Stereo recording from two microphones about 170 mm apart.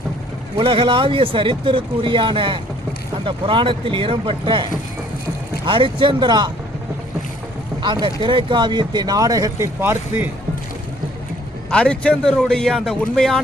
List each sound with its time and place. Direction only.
0.5 s speech: 30° right (ahead or behind)
7.8 s speech: 25° right (ahead or behind)
11.7 s speech: 5° left (ahead or behind)